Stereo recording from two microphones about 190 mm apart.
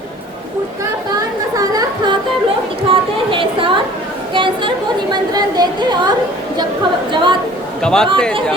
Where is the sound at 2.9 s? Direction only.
25° right (ahead or behind).